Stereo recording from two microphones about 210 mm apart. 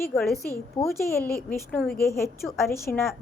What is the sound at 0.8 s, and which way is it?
Speech, 20° left (ahead or behind).